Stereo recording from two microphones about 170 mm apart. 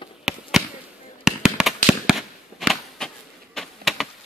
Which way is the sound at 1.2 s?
5° right (ahead or behind).